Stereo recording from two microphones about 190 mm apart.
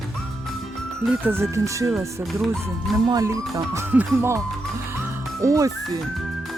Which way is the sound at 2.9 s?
15° right (ahead or behind).